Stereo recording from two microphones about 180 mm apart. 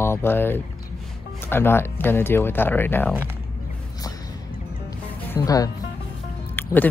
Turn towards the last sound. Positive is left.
turn(degrees=10)  # may be behind; listen again after turning